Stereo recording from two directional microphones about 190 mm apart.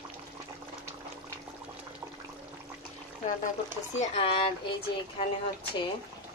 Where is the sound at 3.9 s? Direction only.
30° left (ahead or behind).